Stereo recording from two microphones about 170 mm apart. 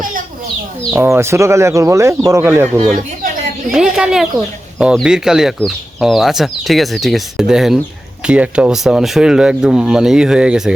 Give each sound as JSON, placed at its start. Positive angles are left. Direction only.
{"t": 0.8, "sound": "speech", "side_deg": -15}
{"t": 3.7, "sound": "speech", "side_deg": -5}